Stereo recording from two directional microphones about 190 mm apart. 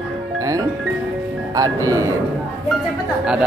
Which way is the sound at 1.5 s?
20° right (ahead or behind).